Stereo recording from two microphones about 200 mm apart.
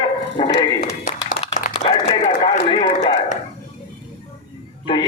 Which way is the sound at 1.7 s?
30° left (ahead or behind).